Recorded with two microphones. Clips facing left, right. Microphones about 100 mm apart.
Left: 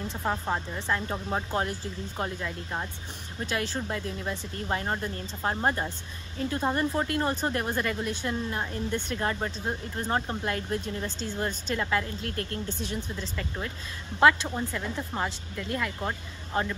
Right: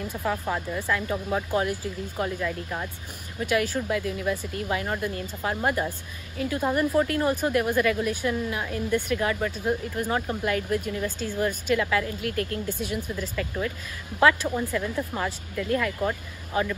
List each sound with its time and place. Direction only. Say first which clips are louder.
0.1 s speech: right 1 dB; 30° left (ahead or behind)